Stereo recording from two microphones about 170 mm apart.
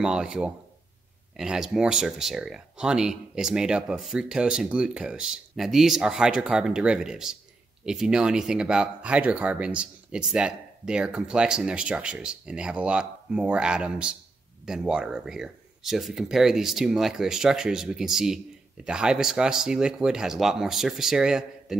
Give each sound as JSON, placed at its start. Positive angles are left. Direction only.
{"t": 0.0, "sound": "speech", "side_deg": -5}